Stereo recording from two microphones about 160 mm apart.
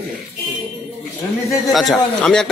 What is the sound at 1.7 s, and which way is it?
Speech, centre (ahead or behind).